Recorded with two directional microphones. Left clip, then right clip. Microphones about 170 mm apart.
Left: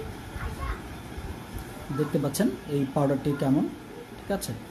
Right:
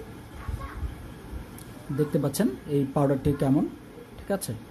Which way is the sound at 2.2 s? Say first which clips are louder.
Even; 30° right (ahead or behind).